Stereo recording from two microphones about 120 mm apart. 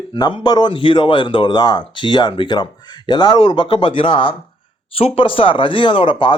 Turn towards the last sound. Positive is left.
turn(degrees=45)  # may be behind; listen again after turning